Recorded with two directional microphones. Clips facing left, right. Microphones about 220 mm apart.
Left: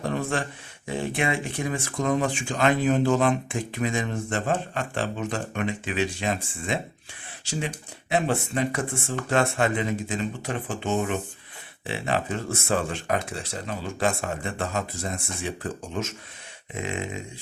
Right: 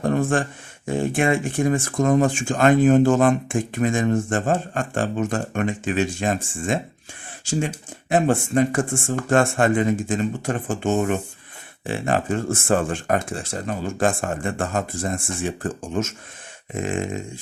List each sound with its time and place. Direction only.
0.0 s a sound: 50° right (ahead or behind)
0.9 s speech: 50° right (ahead or behind)
8.1 s speech: 50° right (ahead or behind)